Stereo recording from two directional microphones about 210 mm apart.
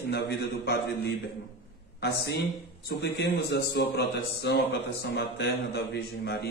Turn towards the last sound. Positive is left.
turn(degrees=50)  # may be behind; listen again after turning